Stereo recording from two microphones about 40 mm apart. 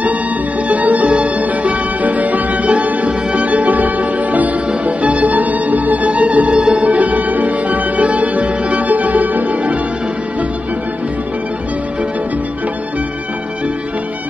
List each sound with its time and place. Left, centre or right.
0.7 s music: right